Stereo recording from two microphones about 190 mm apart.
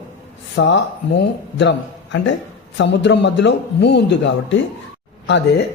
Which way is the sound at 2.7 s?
65° left (ahead or behind).